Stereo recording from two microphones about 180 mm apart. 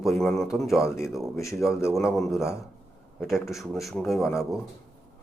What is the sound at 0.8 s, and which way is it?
Speech, 15° left (ahead or behind).